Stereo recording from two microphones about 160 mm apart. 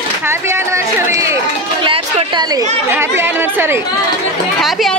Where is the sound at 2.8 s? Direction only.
15° right (ahead or behind).